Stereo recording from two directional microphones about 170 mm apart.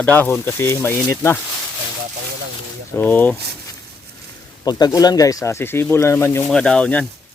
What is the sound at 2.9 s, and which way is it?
Speech, 10° left (ahead or behind).